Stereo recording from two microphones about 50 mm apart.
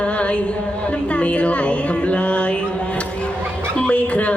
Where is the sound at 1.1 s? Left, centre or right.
Left.